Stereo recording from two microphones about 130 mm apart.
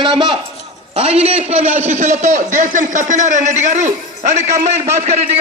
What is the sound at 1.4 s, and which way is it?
A man's voice, 55° right (ahead or behind).